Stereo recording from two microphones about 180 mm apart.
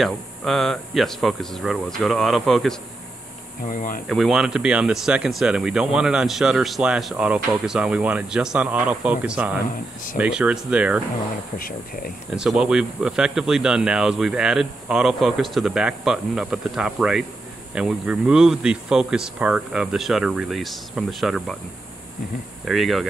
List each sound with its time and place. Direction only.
0.0 s speech: centre (ahead or behind)
3.6 s speech: 45° left (ahead or behind)
4.1 s speech: centre (ahead or behind)
11.5 s speech: 55° left (ahead or behind)
12.4 s speech: 5° right (ahead or behind)
22.7 s speech: centre (ahead or behind)